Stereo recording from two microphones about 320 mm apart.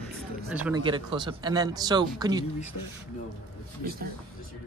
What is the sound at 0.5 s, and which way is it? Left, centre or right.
Speech, centre.